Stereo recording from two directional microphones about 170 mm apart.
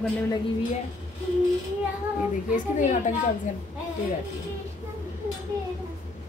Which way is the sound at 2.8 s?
45° left (ahead or behind).